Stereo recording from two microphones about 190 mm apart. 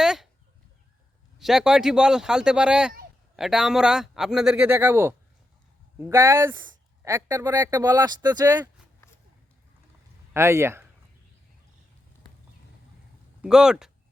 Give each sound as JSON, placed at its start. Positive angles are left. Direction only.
{"t": 0.0, "sound": "chicken", "side_deg": 0}
{"t": 1.4, "sound": "a man's voice", "side_deg": 0}
{"t": 10.3, "sound": "speech", "side_deg": -15}
{"t": 13.4, "sound": "a man's voice", "side_deg": -5}